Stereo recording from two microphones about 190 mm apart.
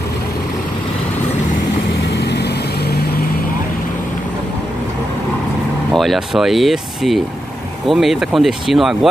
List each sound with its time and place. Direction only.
2.1 s vehicle: 60° left (ahead or behind)
5.9 s speech: centre (ahead or behind)